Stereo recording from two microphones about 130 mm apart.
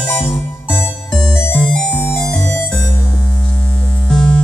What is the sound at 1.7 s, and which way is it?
Music, 15° left (ahead or behind).